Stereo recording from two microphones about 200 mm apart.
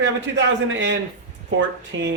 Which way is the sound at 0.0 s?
65° right (ahead or behind).